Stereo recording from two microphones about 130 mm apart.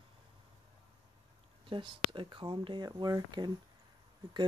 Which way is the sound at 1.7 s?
40° right (ahead or behind).